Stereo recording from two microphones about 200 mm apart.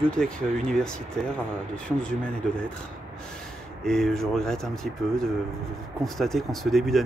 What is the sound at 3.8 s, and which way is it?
Speech, centre (ahead or behind).